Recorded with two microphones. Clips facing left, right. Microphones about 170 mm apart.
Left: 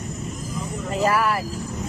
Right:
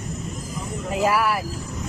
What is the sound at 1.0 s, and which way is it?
Speech, 10° right (ahead or behind).